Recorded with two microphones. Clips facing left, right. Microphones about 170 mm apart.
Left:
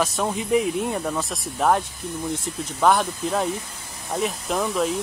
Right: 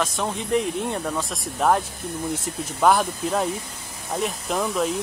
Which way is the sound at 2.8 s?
Centre (ahead or behind).